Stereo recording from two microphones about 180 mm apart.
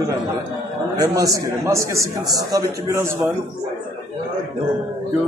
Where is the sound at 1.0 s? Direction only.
20° right (ahead or behind).